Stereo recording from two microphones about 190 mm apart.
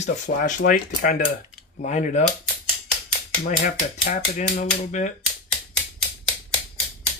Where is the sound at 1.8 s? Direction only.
40° left (ahead or behind).